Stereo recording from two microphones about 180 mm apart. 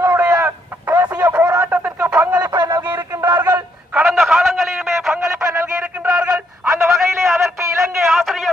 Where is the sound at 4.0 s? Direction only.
Centre (ahead or behind).